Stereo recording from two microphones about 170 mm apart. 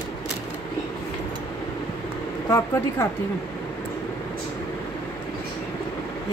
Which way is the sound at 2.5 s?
15° left (ahead or behind).